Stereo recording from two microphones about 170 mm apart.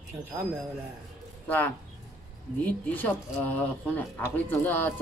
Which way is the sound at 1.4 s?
10° left (ahead or behind).